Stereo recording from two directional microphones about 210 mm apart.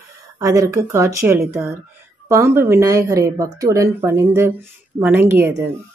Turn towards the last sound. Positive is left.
turn(degrees=-10)  # may be behind; listen again after turning